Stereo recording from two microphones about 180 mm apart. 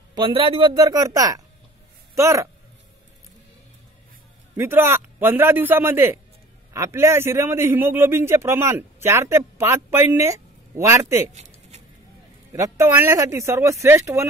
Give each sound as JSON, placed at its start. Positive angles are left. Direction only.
{"t": 0.1, "sound": "a man's voice", "side_deg": -30}
{"t": 4.6, "sound": "a man's voice", "side_deg": -10}
{"t": 12.5, "sound": "a man's voice", "side_deg": -15}